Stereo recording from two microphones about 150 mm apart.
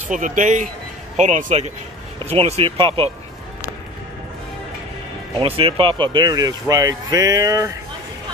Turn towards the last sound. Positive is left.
turn(degrees=-20)  # may be behind; listen again after turning